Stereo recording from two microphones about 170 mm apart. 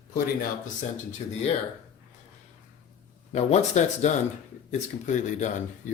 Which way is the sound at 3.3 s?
45° left (ahead or behind).